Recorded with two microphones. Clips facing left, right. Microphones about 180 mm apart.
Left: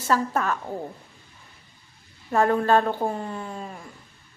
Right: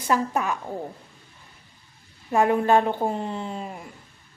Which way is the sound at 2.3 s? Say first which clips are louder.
Right 1 dB; 15° right (ahead or behind).